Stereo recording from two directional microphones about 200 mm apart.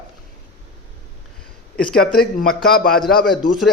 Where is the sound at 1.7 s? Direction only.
5° left (ahead or behind).